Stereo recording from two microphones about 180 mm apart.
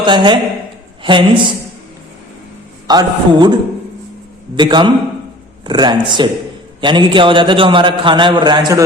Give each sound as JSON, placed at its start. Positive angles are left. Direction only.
{"t": 0.0, "sound": "a man's voice", "side_deg": -25}
{"t": 2.8, "sound": "a man's voice", "side_deg": -20}